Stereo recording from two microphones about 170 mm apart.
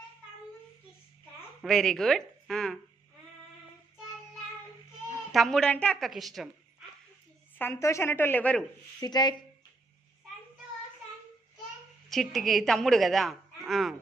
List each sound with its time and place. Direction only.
1.6 s a woman's voice: 5° left (ahead or behind)
5.3 s a woman's voice: centre (ahead or behind)
7.6 s a woman's voice: 15° left (ahead or behind)
9.0 s speech: 25° left (ahead or behind)
12.0 s a woman's voice: centre (ahead or behind)